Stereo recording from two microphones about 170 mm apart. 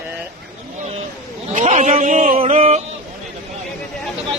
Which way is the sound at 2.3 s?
40° right (ahead or behind).